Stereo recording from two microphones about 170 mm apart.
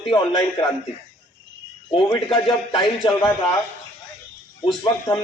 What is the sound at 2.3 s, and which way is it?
Speech, 25° left (ahead or behind).